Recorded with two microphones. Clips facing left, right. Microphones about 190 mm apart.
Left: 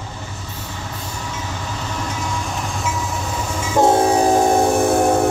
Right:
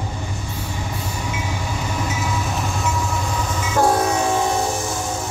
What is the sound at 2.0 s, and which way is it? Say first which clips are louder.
Train: even; 5° right (ahead or behind).